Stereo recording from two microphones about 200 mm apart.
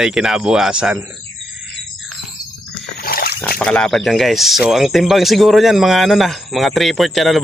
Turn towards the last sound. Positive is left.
turn(degrees=0)  # may be behind; listen again after turning